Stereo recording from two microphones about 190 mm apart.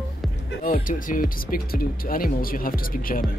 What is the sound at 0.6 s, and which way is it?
Speech, 45° left (ahead or behind).